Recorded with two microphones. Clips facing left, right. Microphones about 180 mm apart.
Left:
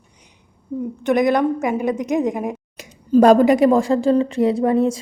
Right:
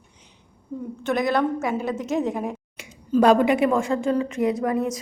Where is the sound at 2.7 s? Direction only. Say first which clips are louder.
Left 7 dB; 40° left (ahead or behind).